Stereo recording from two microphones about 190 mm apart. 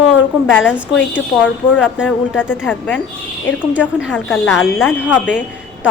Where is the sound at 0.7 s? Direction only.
10° left (ahead or behind).